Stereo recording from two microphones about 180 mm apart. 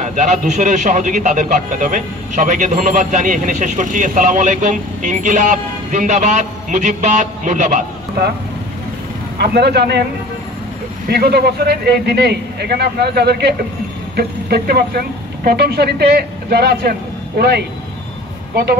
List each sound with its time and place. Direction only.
0.0 s a man's voice: 40° right (ahead or behind)
9.4 s speech: 65° right (ahead or behind)
11.1 s speech: 60° right (ahead or behind)